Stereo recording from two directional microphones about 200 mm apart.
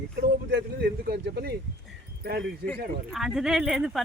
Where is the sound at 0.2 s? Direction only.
55° right (ahead or behind).